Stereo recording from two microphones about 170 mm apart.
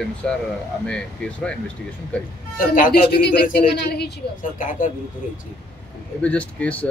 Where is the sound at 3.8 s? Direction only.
75° left (ahead or behind).